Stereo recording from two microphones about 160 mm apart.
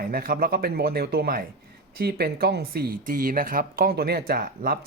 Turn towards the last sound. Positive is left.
turn(degrees=-70)  # may be behind; listen again after turning